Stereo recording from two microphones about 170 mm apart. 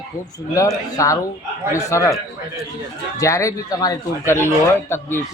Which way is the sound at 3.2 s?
20° left (ahead or behind).